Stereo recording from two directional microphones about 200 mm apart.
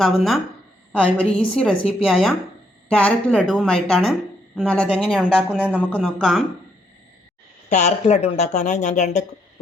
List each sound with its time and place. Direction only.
0.9 s a woman's voice: 5° left (ahead or behind)
5.9 s a woman's voice: 5° left (ahead or behind)
7.7 s speech: 35° left (ahead or behind)